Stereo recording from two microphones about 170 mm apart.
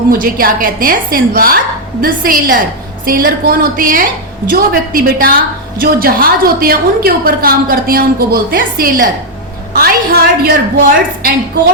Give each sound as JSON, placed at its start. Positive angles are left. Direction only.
{"t": 0.1, "sound": "a woman's voice", "side_deg": -60}